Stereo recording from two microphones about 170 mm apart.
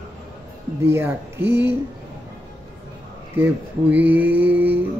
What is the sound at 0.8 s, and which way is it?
Speech, 10° right (ahead or behind).